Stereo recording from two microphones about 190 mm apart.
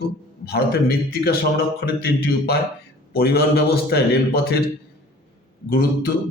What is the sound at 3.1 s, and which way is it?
Speech, 55° left (ahead or behind).